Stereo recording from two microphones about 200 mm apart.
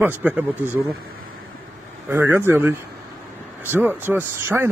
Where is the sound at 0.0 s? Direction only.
10° right (ahead or behind).